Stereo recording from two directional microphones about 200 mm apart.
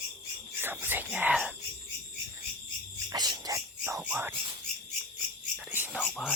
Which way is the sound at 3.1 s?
20° right (ahead or behind).